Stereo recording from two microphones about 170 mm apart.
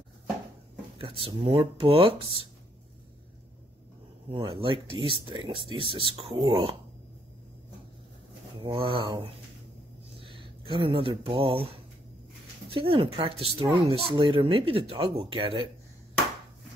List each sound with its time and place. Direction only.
0.9 s speech: 30° right (ahead or behind)
4.3 s speech: 30° right (ahead or behind)
8.5 s speech: 30° right (ahead or behind)
12.7 s speech: 35° right (ahead or behind)